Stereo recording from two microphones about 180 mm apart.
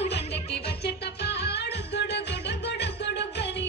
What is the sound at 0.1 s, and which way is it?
Music, 70° left (ahead or behind).